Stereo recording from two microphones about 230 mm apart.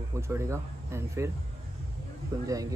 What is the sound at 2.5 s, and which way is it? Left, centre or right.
Speech, centre.